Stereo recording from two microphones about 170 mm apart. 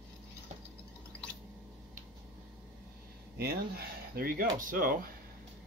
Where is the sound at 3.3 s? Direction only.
65° right (ahead or behind).